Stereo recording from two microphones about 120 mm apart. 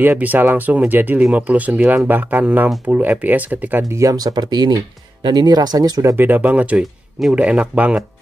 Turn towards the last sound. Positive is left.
turn(degrees=-10)  # may be behind; listen again after turning